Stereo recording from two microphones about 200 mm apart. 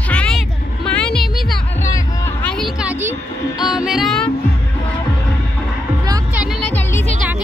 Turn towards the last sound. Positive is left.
turn(degrees=10)  # may be behind; listen again after turning